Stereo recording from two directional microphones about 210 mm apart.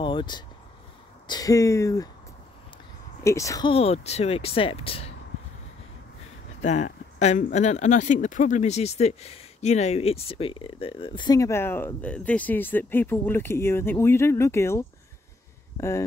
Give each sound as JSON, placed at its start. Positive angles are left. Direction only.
{"t": 0.0, "sound": "speech", "side_deg": 20}
{"t": 3.3, "sound": "speech", "side_deg": 15}
{"t": 6.6, "sound": "speech", "side_deg": 35}